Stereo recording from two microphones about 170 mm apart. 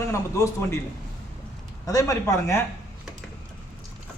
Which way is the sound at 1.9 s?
20° left (ahead or behind).